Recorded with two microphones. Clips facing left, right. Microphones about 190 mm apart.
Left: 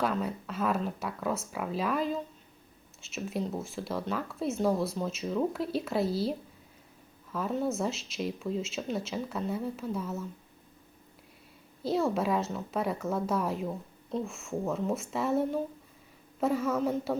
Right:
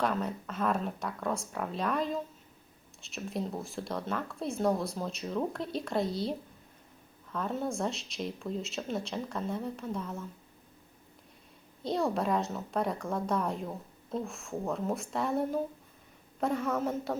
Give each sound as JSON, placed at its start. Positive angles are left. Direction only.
{"t": 0.0, "sound": "speech", "side_deg": 0}
{"t": 7.3, "sound": "speech", "side_deg": 5}
{"t": 11.8, "sound": "speech", "side_deg": 5}